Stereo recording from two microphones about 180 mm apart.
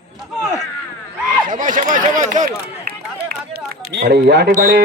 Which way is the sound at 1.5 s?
45° right (ahead or behind).